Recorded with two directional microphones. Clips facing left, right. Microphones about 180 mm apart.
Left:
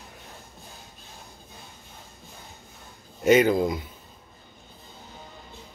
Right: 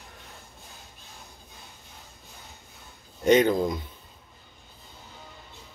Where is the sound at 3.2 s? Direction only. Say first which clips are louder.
Left 1 dB; 5° left (ahead or behind).